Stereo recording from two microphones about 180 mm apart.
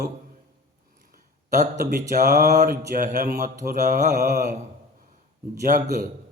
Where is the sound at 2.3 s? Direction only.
45° right (ahead or behind).